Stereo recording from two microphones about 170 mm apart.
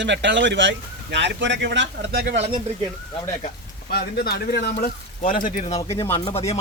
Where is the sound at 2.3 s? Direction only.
40° right (ahead or behind).